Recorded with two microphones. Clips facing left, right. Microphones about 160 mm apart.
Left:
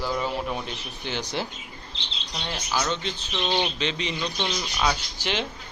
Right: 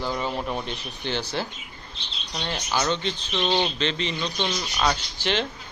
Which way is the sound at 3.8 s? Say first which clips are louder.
Right 1 dB; 10° left (ahead or behind).